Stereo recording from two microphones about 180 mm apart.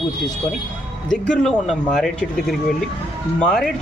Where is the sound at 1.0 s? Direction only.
5° left (ahead or behind).